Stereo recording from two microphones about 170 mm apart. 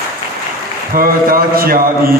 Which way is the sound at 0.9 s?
55° right (ahead or behind).